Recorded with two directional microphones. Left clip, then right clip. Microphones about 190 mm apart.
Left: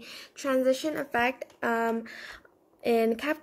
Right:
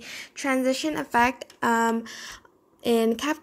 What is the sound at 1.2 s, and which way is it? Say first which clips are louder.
Speech: right 4 dB; 35° right (ahead or behind).